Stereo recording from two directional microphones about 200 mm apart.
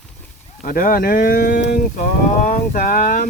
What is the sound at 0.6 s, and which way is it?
Speech, 45° left (ahead or behind).